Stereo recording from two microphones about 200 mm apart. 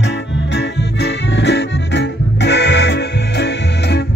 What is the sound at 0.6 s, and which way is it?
Music, 60° left (ahead or behind).